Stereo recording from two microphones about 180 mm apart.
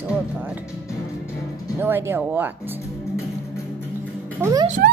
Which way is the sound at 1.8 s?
15° right (ahead or behind).